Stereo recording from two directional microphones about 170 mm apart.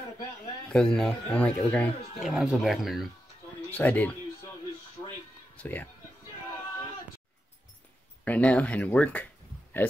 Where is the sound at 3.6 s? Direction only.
10° left (ahead or behind).